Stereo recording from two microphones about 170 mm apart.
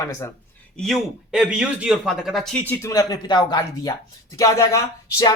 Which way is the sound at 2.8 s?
20° left (ahead or behind).